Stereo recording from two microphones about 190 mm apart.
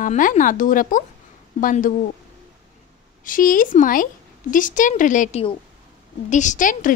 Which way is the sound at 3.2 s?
45° left (ahead or behind).